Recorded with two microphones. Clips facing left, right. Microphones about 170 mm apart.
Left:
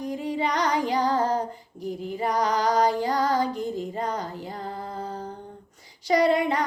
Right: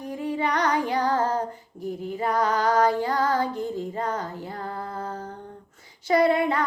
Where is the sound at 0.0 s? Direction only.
15° left (ahead or behind).